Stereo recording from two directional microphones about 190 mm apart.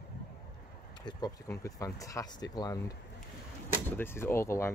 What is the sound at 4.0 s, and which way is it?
Speech, 10° left (ahead or behind).